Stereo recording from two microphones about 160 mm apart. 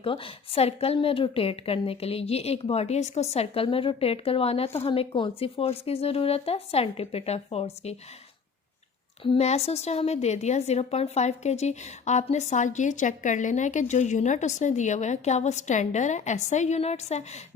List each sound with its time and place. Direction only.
0.0 s a woman's voice: 35° left (ahead or behind)
9.2 s a woman's voice: 40° left (ahead or behind)